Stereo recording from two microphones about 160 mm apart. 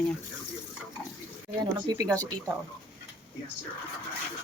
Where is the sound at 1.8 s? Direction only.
25° right (ahead or behind).